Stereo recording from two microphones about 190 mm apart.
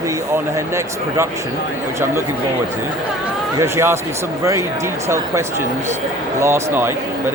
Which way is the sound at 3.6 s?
15° right (ahead or behind).